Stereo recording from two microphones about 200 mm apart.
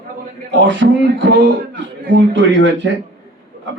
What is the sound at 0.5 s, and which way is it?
A man's voice, 65° right (ahead or behind).